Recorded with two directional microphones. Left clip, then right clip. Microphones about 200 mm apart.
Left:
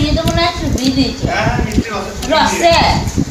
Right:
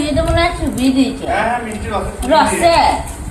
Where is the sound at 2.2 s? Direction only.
5° right (ahead or behind).